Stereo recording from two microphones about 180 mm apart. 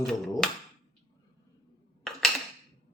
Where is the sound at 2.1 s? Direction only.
Centre (ahead or behind).